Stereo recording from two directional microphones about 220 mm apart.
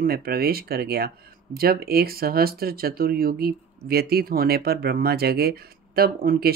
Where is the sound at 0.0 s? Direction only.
45° right (ahead or behind).